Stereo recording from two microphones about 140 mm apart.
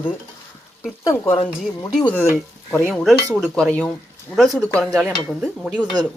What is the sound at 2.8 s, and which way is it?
Speech, centre (ahead or behind).